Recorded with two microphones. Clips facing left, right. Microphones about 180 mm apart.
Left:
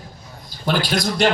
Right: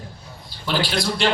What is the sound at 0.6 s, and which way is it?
Speech, 45° left (ahead or behind).